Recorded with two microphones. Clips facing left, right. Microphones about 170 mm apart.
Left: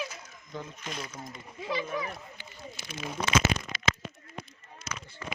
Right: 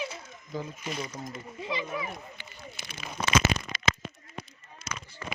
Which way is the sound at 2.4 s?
65° right (ahead or behind).